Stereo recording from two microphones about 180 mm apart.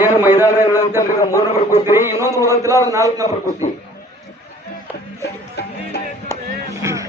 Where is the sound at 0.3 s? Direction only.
20° left (ahead or behind).